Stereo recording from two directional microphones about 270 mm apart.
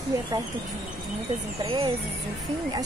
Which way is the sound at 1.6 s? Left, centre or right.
Centre.